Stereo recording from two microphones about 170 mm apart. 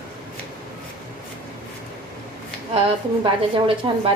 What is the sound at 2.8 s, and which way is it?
A woman's voice, 30° right (ahead or behind).